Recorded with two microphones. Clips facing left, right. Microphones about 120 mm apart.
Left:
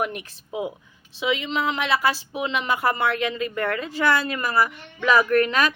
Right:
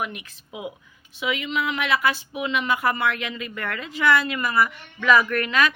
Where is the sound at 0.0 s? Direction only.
40° left (ahead or behind).